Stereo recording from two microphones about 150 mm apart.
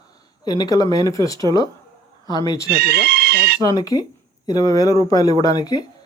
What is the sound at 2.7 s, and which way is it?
Speech, 90° right.